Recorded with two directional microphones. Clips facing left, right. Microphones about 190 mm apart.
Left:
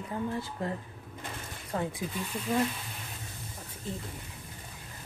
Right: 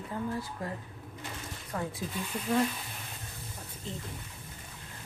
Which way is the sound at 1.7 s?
30° left (ahead or behind).